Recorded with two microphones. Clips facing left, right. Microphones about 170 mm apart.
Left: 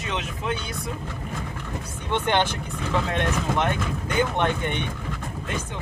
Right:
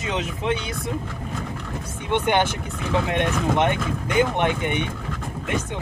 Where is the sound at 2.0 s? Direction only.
15° right (ahead or behind).